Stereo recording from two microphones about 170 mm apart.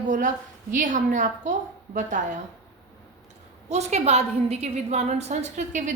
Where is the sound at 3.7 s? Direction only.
40° right (ahead or behind).